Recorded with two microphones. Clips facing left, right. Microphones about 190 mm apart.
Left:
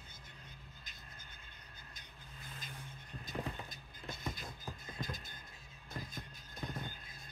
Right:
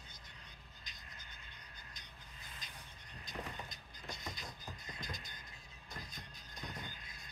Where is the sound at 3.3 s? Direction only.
55° left (ahead or behind).